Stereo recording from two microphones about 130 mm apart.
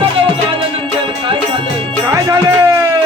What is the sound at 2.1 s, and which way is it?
Music, 20° right (ahead or behind).